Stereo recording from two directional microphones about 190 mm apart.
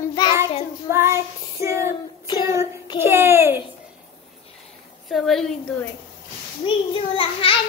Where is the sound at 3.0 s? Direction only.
10° right (ahead or behind).